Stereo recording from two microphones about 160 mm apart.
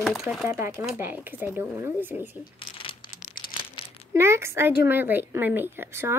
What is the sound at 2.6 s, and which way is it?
Crumpling, 35° left (ahead or behind).